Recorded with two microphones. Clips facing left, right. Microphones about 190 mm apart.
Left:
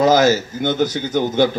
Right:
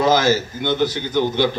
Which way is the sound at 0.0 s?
45° left (ahead or behind).